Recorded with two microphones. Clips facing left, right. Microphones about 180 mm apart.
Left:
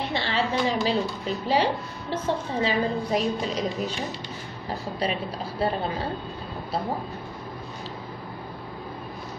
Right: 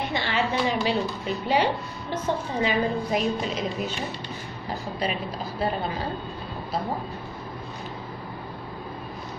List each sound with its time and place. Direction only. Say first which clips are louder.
0.1 s a woman's voice: left 1 dB; 30° left (ahead or behind)
5.6 s a woman's voice: left 1 dB; 30° left (ahead or behind)